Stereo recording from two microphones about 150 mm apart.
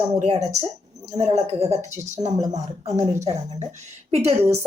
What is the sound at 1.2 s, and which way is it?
Speech, 45° right (ahead or behind).